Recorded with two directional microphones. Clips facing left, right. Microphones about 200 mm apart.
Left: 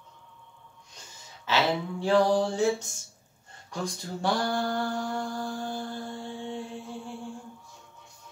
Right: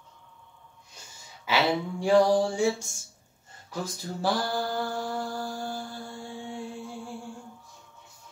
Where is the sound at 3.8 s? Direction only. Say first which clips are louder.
Even; 5° right (ahead or behind).